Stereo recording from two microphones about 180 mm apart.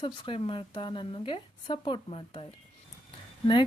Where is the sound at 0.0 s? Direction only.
25° left (ahead or behind).